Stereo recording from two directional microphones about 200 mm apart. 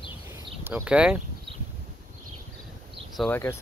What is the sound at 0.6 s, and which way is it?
Speech, 10° right (ahead or behind).